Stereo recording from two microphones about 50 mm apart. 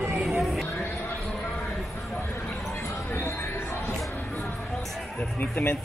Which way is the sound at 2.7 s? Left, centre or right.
Left.